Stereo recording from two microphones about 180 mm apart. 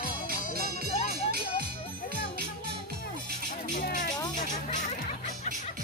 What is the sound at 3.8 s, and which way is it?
Music, 50° left (ahead or behind).